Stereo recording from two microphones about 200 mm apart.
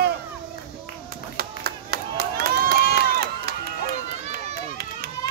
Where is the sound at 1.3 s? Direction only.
50° right (ahead or behind).